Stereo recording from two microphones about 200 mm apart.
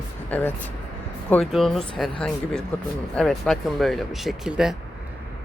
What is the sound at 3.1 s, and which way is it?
Speech, centre (ahead or behind).